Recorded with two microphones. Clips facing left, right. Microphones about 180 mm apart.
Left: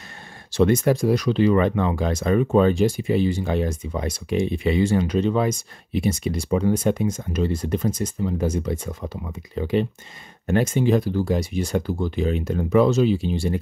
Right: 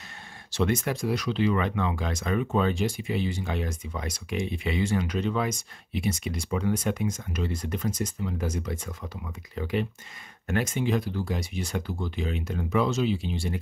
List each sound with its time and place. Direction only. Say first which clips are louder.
0.5 s speech: left 8 dB; 35° left (ahead or behind)